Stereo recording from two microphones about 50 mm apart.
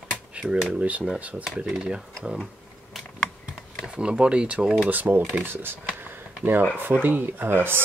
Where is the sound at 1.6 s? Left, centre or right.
Centre.